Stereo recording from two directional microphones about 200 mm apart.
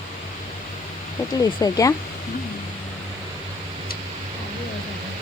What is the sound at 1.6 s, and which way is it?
Speech, 15° left (ahead or behind).